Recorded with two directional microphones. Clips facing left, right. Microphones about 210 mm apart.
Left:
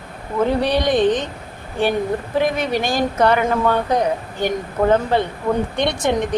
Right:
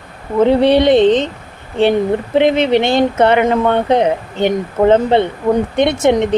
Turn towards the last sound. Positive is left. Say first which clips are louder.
# right 7 dB
turn(degrees=-20)  # may be behind; listen again after turning